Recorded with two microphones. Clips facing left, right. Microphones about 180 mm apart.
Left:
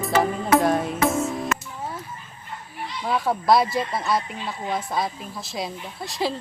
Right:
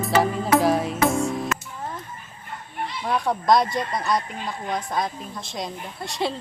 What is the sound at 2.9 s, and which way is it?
A woman's voice, centre (ahead or behind).